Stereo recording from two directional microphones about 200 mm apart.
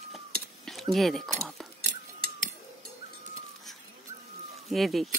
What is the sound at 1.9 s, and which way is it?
Cutlery, 40° right (ahead or behind).